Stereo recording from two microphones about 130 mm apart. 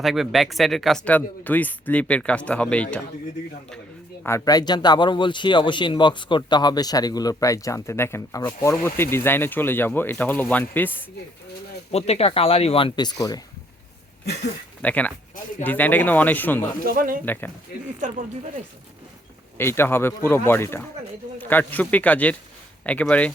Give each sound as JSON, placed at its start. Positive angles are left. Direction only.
{"t": 0.0, "sound": "speech", "side_deg": 0}
{"t": 4.2, "sound": "speech", "side_deg": 20}
{"t": 11.9, "sound": "speech", "side_deg": 50}
{"t": 14.8, "sound": "speech", "side_deg": 10}
{"t": 16.9, "sound": "speech", "side_deg": -90}
{"t": 19.5, "sound": "speech", "side_deg": 20}